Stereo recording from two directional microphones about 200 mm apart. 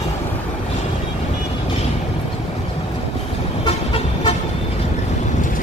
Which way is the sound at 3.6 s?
25° left (ahead or behind).